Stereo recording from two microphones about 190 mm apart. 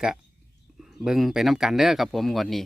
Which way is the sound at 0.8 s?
Centre (ahead or behind).